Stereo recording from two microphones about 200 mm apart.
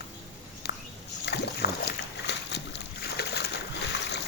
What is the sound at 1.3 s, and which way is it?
Boat, 55° left (ahead or behind).